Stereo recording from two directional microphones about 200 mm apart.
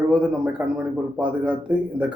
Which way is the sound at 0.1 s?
5° right (ahead or behind).